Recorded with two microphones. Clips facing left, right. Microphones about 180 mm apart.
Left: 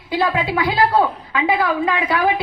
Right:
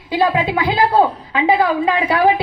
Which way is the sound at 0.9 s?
30° right (ahead or behind).